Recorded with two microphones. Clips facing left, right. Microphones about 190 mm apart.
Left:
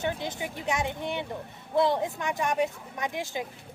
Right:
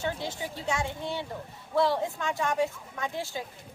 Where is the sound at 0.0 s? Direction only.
20° left (ahead or behind).